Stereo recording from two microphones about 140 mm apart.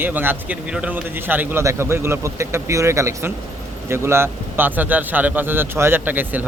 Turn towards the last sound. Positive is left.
turn(degrees=-15)  # may be behind; listen again after turning